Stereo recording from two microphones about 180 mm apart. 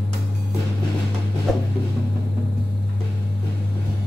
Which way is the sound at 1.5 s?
Centre (ahead or behind).